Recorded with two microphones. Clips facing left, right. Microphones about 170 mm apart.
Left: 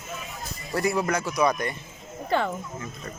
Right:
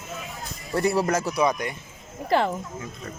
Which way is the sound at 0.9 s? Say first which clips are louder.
Right 3 dB; 40° right (ahead or behind).